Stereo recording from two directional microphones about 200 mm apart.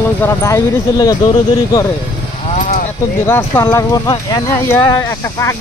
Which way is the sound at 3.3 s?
10° left (ahead or behind).